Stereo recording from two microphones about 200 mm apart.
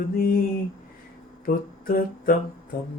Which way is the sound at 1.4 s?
45° left (ahead or behind).